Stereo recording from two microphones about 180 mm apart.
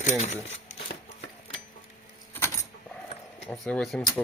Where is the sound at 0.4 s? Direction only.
35° left (ahead or behind).